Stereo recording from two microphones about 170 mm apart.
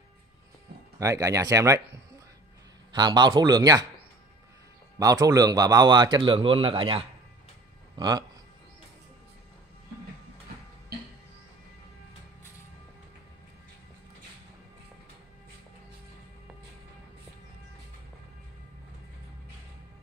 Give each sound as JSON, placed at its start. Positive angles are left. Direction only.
{"t": 0.9, "sound": "a man's voice", "side_deg": -20}
{"t": 4.9, "sound": "a man's voice", "side_deg": -20}